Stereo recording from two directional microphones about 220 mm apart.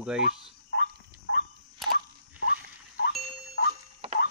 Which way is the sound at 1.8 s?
Centre (ahead or behind).